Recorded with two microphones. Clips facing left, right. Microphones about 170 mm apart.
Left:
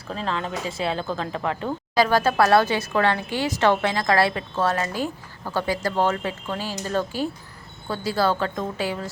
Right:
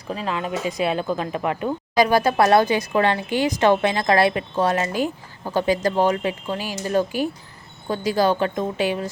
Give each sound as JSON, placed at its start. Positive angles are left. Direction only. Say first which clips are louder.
{"t": 0.1, "sound": "speech", "louder": "right 2 dB", "side_deg": -15}